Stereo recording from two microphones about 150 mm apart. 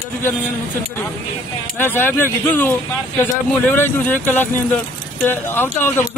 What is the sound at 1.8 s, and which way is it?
A man's voice, 15° left (ahead or behind).